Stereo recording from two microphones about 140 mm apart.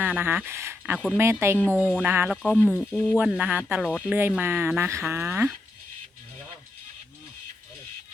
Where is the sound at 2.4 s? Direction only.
15° left (ahead or behind).